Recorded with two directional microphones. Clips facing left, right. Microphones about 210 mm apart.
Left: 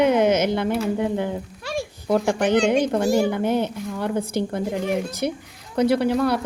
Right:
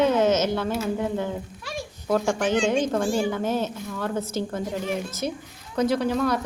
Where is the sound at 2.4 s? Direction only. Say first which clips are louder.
Left 5 dB; 65° left (ahead or behind).